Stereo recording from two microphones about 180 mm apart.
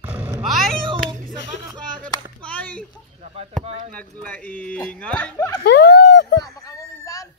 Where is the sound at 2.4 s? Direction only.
10° left (ahead or behind).